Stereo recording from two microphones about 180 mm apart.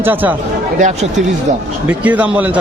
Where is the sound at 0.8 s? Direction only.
45° right (ahead or behind).